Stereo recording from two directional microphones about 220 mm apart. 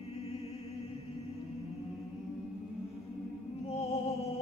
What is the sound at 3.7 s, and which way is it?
Music, 30° left (ahead or behind).